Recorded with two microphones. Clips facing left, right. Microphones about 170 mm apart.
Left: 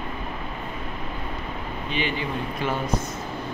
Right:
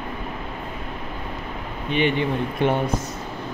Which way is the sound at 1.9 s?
60° right (ahead or behind).